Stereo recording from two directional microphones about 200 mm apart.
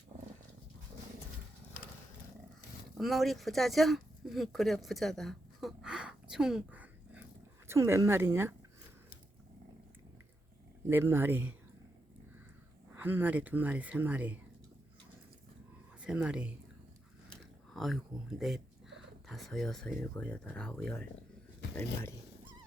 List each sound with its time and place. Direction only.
3.0 s speech: centre (ahead or behind)
10.8 s speech: 10° right (ahead or behind)
13.0 s speech: 10° right (ahead or behind)
16.0 s speech: 5° right (ahead or behind)
17.7 s speech: centre (ahead or behind)